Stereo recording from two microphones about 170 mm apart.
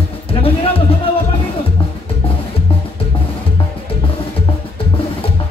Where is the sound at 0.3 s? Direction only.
35° left (ahead or behind).